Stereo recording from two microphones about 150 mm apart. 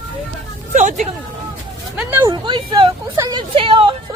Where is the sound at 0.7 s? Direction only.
55° right (ahead or behind).